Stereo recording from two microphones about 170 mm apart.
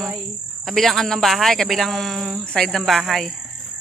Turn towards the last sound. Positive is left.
turn(degrees=0)  # may be behind; listen again after turning